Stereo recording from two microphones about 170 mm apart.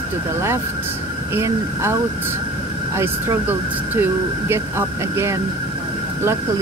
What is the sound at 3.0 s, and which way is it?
Speech, 15° right (ahead or behind).